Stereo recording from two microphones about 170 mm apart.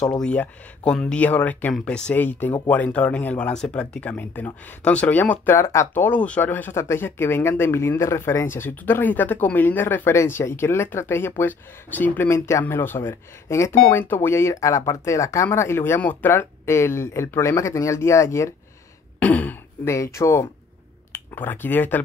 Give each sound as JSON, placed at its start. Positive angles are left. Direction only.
{"t": 0.2, "sound": "speech", "side_deg": 5}